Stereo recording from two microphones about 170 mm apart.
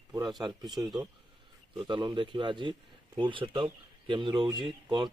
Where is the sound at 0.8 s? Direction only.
5° right (ahead or behind).